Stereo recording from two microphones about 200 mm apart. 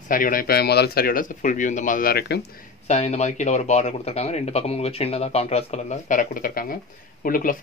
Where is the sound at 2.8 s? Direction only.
35° left (ahead or behind).